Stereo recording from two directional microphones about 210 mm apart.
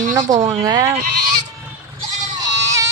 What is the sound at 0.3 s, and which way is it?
Speech, 35° right (ahead or behind).